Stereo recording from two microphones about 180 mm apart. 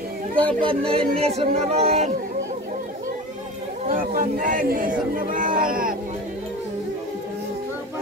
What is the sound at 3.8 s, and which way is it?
Speech, 50° right (ahead or behind).